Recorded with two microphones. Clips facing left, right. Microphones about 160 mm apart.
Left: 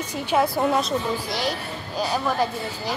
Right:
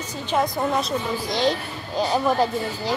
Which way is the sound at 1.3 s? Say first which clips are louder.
Right 4 dB; 20° right (ahead or behind).